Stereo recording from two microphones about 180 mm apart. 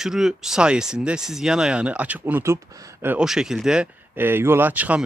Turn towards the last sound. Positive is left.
turn(degrees=-10)  # may be behind; listen again after turning